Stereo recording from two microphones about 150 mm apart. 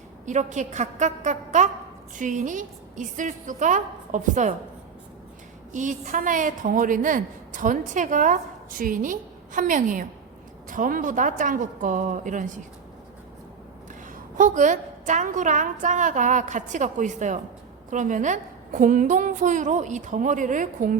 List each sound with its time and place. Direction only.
0.3 s a woman's voice: 55° right (ahead or behind)
5.7 s a woman's voice: 60° right (ahead or behind)
14.3 s a woman's voice: 55° right (ahead or behind)